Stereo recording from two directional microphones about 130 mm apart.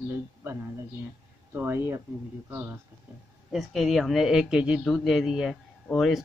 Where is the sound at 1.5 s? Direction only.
15° right (ahead or behind).